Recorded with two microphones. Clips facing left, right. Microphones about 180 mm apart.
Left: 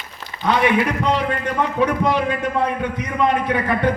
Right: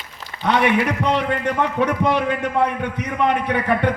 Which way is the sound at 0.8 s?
65° right (ahead or behind).